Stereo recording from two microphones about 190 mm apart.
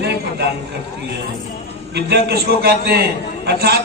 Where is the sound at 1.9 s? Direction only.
60° right (ahead or behind).